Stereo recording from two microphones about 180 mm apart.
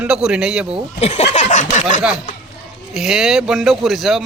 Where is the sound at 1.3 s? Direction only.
40° left (ahead or behind).